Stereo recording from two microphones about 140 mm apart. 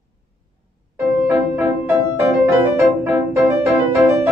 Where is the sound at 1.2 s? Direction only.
15° right (ahead or behind).